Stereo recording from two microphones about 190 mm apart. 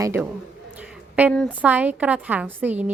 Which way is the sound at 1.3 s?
5° left (ahead or behind).